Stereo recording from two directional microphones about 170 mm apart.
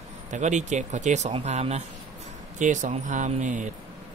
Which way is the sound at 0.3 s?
45° right (ahead or behind).